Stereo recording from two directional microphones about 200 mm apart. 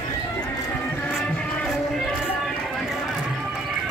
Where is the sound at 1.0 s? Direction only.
5° left (ahead or behind).